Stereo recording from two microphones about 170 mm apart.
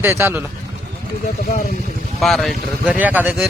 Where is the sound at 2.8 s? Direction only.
10° right (ahead or behind).